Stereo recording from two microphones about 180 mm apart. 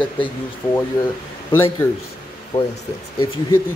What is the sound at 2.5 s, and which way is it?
Speech, 40° left (ahead or behind).